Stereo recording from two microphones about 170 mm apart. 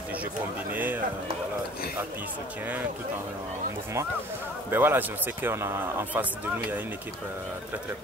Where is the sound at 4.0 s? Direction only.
15° right (ahead or behind).